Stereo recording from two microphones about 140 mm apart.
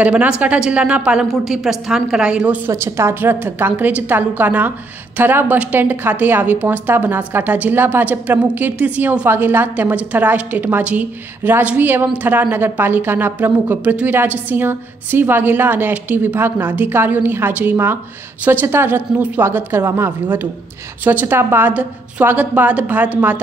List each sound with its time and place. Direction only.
0.0 s a woman's voice: 10° right (ahead or behind)